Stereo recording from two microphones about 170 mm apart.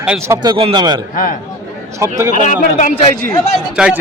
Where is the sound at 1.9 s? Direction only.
15° right (ahead or behind).